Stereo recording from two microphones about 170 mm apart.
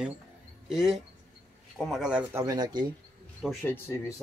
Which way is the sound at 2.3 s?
20° right (ahead or behind).